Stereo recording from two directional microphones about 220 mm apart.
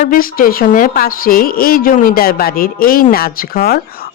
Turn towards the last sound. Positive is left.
turn(degrees=45)  # may be behind; listen again after turning